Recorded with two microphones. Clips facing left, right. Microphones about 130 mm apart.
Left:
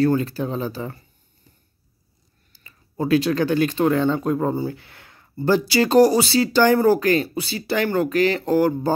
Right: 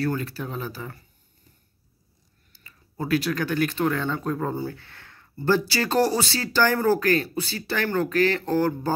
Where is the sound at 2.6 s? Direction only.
20° left (ahead or behind).